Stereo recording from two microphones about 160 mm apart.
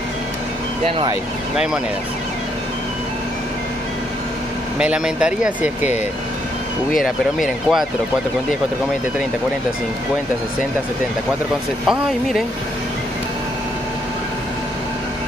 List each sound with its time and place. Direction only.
0.8 s speech: 35° right (ahead or behind)
4.7 s speech: 5° right (ahead or behind)
7.3 s speech: centre (ahead or behind)
11.9 s speech: centre (ahead or behind)